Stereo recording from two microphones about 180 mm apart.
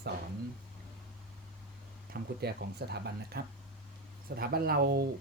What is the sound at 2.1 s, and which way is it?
Speech, 65° right (ahead or behind).